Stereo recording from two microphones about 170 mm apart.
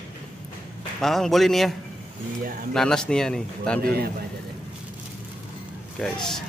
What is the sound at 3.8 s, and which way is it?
Speech, 65° right (ahead or behind).